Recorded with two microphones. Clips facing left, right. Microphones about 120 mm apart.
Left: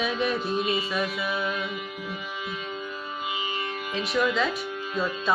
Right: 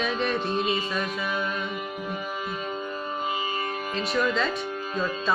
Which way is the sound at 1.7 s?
45° right (ahead or behind).